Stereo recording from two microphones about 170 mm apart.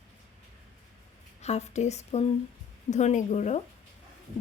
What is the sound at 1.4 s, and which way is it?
Speech, 40° left (ahead or behind).